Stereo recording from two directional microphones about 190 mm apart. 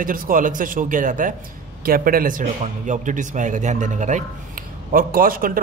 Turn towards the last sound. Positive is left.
turn(degrees=-50)  # may be behind; listen again after turning